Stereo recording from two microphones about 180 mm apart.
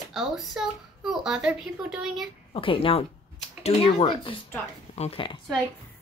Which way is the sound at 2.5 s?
30° left (ahead or behind).